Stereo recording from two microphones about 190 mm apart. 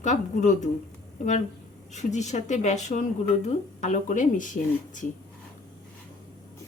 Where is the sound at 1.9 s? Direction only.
40° left (ahead or behind).